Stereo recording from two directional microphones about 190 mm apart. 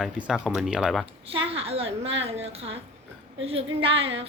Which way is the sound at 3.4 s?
30° right (ahead or behind).